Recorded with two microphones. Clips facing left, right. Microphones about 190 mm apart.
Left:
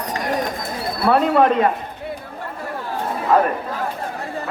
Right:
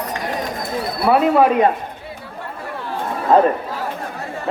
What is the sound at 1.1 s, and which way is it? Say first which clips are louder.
Speech: right 1 dB; 5° right (ahead or behind).